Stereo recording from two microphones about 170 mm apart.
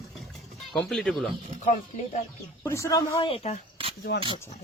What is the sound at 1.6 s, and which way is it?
Speech, 45° left (ahead or behind).